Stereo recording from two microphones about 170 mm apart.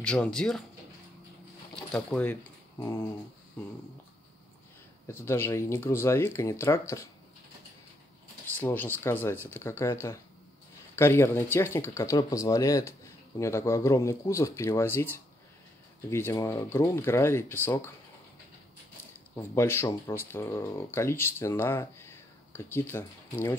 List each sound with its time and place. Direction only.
0.0 s speech: 5° left (ahead or behind)
1.9 s speech: 5° left (ahead or behind)
5.0 s speech: 15° left (ahead or behind)
8.5 s speech: 10° left (ahead or behind)
11.0 s speech: 15° left (ahead or behind)
19.3 s speech: 15° left (ahead or behind)